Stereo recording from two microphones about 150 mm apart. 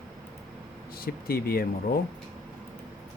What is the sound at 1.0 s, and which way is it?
Speech, 90° left.